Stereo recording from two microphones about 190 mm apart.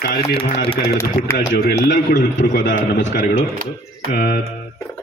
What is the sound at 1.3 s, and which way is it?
A man's voice, 60° left (ahead or behind).